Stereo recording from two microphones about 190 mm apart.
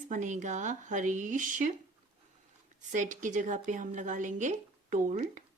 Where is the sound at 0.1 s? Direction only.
40° right (ahead or behind).